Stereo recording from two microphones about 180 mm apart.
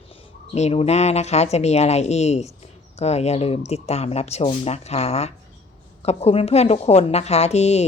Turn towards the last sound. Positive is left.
turn(degrees=35)  # may be behind; listen again after turning